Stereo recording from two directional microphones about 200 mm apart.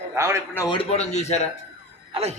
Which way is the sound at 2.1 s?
30° right (ahead or behind).